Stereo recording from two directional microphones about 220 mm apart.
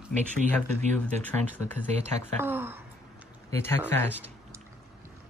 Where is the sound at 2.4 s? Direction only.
10° right (ahead or behind).